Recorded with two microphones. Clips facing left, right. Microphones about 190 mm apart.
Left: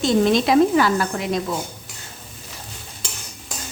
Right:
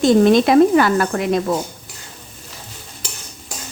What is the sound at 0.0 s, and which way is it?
Speech, 50° right (ahead or behind).